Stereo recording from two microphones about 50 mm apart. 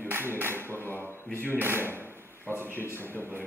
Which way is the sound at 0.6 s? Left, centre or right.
Left.